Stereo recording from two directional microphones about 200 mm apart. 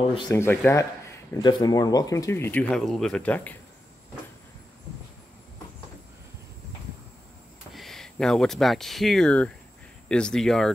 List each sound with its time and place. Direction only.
0.3 s speech: 10° left (ahead or behind)
7.7 s speech: centre (ahead or behind)